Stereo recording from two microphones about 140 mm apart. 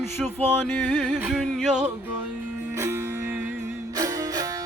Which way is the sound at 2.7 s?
20° right (ahead or behind).